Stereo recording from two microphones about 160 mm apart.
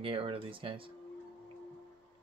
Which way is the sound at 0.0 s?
35° right (ahead or behind).